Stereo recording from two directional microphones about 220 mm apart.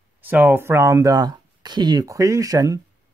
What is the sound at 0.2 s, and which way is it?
Speech, 10° right (ahead or behind).